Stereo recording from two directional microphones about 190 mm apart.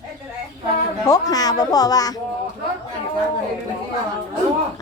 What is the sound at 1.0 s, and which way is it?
Speech, 20° left (ahead or behind).